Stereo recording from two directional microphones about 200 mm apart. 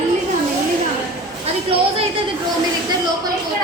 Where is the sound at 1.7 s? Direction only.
25° right (ahead or behind).